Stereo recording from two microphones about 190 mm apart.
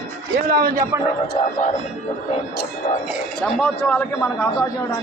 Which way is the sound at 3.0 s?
Centre (ahead or behind).